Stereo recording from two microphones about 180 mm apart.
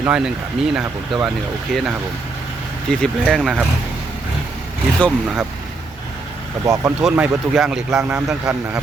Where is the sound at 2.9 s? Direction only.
Centre (ahead or behind).